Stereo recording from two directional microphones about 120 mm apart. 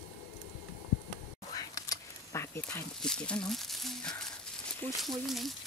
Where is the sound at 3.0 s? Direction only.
5° left (ahead or behind).